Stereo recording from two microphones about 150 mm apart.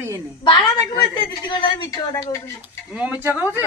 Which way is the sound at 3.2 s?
15° right (ahead or behind).